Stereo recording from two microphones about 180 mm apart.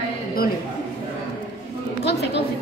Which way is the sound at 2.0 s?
70° left (ahead or behind).